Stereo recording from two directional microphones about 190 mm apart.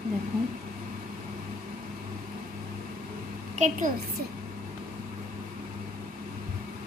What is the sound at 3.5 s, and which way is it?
Speech, 40° right (ahead or behind).